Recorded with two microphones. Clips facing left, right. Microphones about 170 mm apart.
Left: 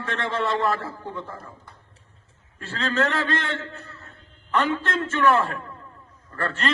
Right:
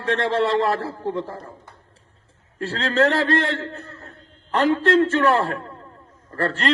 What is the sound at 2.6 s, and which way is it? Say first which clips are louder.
A man's voice: right 5 dB; 35° right (ahead or behind).